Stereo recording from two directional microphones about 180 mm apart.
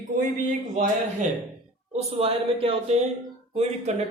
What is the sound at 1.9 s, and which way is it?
Speech, 35° right (ahead or behind).